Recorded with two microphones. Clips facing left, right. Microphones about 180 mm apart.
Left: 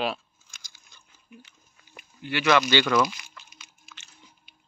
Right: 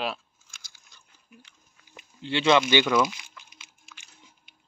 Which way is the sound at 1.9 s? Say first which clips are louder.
Right 2 dB; 25° right (ahead or behind).